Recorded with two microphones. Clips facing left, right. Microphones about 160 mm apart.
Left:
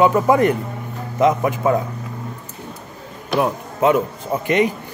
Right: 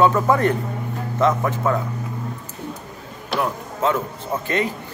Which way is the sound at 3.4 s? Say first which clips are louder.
Left 4 dB; 15° left (ahead or behind).